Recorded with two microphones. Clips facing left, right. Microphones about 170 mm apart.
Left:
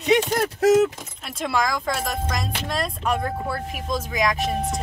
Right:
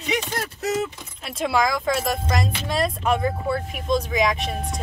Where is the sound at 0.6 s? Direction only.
90° left.